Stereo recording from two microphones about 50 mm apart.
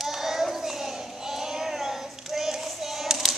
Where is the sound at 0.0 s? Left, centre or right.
Centre.